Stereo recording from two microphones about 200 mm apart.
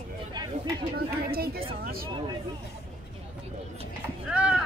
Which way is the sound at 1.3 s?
50° right (ahead or behind).